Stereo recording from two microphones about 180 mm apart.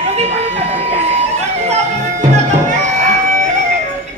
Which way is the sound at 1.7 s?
40° right (ahead or behind).